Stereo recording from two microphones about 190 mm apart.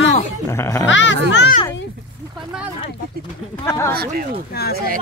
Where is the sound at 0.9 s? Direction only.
75° left (ahead or behind).